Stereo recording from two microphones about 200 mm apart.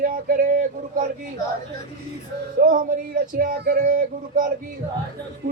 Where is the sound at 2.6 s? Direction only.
45° right (ahead or behind).